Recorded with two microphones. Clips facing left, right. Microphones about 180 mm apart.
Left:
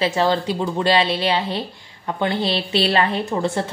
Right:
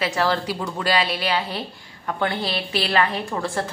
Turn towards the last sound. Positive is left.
turn(degrees=25)  # may be behind; listen again after turning